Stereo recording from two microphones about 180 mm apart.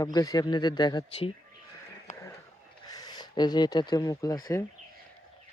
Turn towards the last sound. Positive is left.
turn(degrees=20)  # may be behind; listen again after turning